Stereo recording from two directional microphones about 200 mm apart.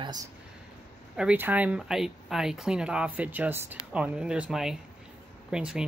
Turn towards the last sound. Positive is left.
turn(degrees=-5)  # may be behind; listen again after turning